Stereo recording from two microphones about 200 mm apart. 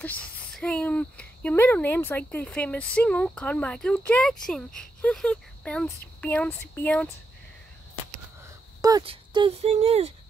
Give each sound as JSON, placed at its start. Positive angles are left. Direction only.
{"t": 0.0, "sound": "speech", "side_deg": 5}
{"t": 8.8, "sound": "speech", "side_deg": -25}